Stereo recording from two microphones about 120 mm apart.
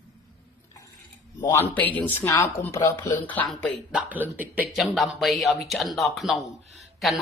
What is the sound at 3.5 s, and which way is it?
Speech, centre (ahead or behind).